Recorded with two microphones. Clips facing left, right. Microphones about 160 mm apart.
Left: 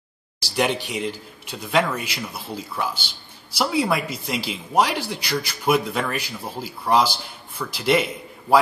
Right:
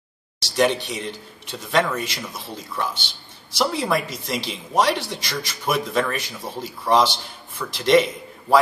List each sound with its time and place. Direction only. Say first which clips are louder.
0.4 s speech: right 3 dB; 10° left (ahead or behind)